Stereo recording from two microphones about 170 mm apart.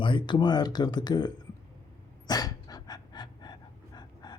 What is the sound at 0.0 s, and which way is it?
Speech, 30° left (ahead or behind).